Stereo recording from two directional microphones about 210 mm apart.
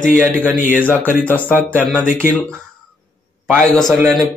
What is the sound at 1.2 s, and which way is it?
Speech, 10° left (ahead or behind).